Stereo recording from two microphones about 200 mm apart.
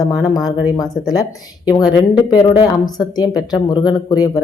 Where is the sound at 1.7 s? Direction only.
20° left (ahead or behind).